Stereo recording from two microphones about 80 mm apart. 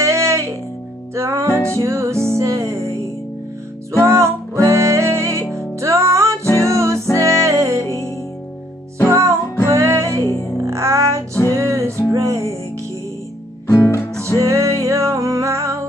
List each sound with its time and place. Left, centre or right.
0.0 s music: right
9.1 s music: right
13.7 s music: left
14.4 s music: right